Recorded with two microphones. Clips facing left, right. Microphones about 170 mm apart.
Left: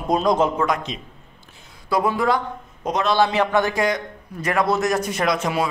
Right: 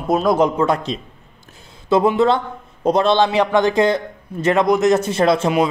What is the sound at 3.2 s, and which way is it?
A man's voice, 15° right (ahead or behind).